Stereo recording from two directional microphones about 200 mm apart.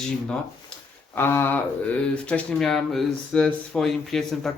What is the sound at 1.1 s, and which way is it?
Speech, 10° left (ahead or behind).